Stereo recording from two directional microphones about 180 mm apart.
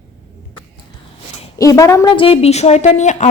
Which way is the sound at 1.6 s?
20° left (ahead or behind).